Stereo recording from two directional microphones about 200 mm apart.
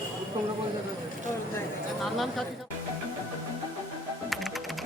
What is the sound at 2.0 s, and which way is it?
Speech, centre (ahead or behind).